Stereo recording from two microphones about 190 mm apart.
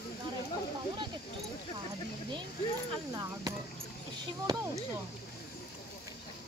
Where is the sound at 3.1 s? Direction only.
20° right (ahead or behind).